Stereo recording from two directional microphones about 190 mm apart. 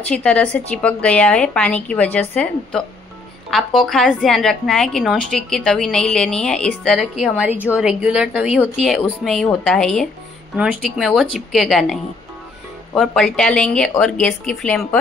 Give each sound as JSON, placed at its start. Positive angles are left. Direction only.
{"t": 0.1, "sound": "a woman's voice", "side_deg": 5}